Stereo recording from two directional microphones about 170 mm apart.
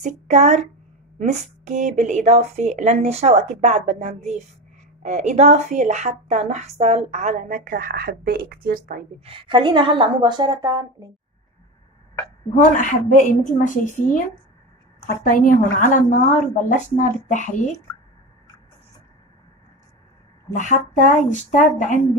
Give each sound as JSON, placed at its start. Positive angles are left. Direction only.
{"t": 0.0, "sound": "speech", "side_deg": -40}
{"t": 9.2, "sound": "a woman's voice", "side_deg": -30}
{"t": 12.7, "sound": "a woman's voice", "side_deg": 50}
{"t": 15.2, "sound": "a woman's voice", "side_deg": 55}
{"t": 20.5, "sound": "a woman's voice", "side_deg": 50}